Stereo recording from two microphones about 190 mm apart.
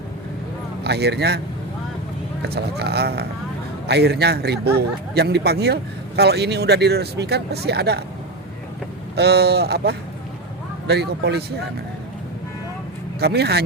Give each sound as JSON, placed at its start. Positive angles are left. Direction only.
{"t": 0.9, "sound": "a man's voice", "side_deg": -60}
{"t": 2.5, "sound": "a man's voice", "side_deg": -60}
{"t": 9.1, "sound": "a man's voice", "side_deg": -60}
{"t": 13.1, "sound": "a man's voice", "side_deg": -60}